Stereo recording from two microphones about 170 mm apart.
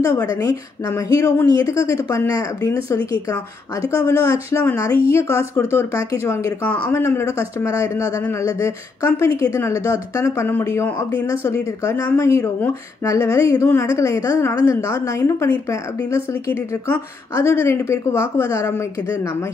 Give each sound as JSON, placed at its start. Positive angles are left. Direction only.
{"t": 0.0, "sound": "speech", "side_deg": 20}